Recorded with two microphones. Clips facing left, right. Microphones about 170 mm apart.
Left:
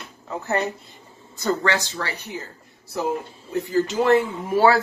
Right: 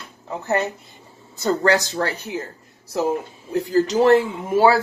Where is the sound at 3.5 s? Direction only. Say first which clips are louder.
Right 3 dB; 40° right (ahead or behind).